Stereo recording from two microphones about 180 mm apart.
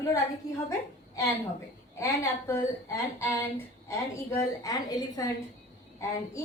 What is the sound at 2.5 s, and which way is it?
A woman's voice, 15° left (ahead or behind).